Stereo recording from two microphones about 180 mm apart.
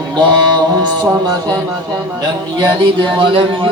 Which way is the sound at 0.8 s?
20° right (ahead or behind).